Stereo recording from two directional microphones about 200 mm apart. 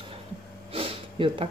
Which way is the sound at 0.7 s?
25° right (ahead or behind).